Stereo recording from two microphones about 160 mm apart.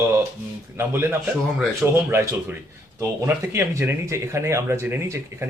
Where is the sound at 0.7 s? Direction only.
15° right (ahead or behind).